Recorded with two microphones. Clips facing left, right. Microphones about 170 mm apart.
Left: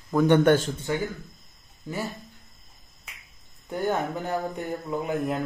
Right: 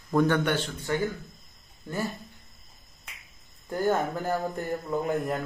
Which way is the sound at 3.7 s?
Centre (ahead or behind).